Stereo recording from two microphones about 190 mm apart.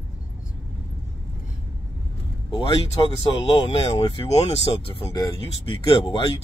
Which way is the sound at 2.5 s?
25° left (ahead or behind).